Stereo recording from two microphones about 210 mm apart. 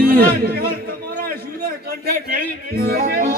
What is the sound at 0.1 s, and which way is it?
Speech, 45° right (ahead or behind).